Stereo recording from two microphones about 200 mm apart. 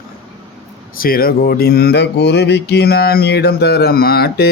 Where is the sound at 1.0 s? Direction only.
45° left (ahead or behind).